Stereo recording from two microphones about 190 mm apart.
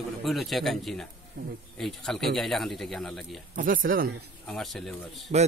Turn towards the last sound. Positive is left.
turn(degrees=-35)  # may be behind; listen again after turning